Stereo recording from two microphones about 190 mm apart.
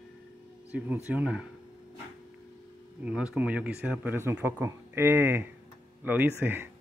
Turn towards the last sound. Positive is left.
turn(degrees=-10)  # may be behind; listen again after turning